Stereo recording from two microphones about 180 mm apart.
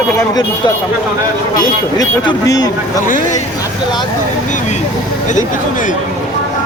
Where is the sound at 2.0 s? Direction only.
20° left (ahead or behind).